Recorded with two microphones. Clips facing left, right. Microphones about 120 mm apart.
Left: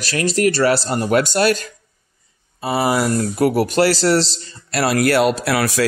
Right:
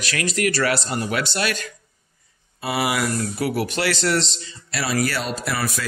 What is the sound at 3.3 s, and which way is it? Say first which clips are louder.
Speech: left 8 dB; 45° left (ahead or behind).